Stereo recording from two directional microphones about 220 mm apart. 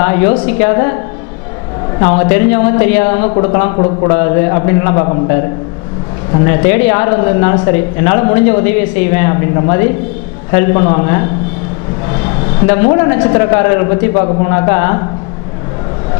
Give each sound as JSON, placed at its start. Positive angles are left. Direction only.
{"t": 0.0, "sound": "speech", "side_deg": 10}
{"t": 2.0, "sound": "a man's voice", "side_deg": 15}